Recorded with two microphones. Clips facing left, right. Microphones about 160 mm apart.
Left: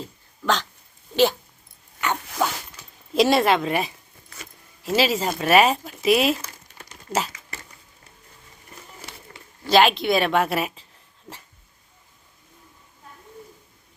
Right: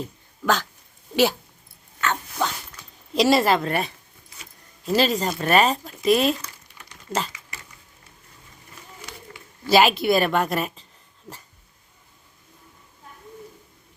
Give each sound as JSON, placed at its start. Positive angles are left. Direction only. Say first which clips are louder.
{"t": 0.4, "sound": "speech", "louder": "right 1 dB", "side_deg": -5}
{"t": 2.0, "sound": "dog", "louder": "left 1 dB", "side_deg": 15}
{"t": 3.1, "sound": "a woman's voice", "louder": "even", "side_deg": 0}
{"t": 6.8, "sound": "crumpling", "louder": "left 4 dB", "side_deg": 40}
{"t": 9.6, "sound": "a woman's voice", "louder": "even", "side_deg": -5}